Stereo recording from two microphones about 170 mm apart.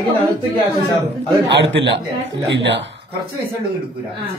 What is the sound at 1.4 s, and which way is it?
A man's voice, 90° right.